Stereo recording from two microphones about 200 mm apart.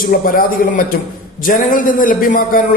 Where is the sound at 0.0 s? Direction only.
45° left (ahead or behind).